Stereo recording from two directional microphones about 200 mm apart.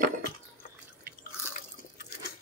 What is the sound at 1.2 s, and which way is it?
Drip, 45° left (ahead or behind).